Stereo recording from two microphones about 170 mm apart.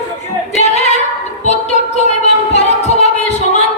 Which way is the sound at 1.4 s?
40° left (ahead or behind).